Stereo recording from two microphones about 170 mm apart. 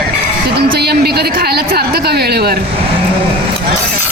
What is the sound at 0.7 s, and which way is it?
A woman's voice, 70° right (ahead or behind).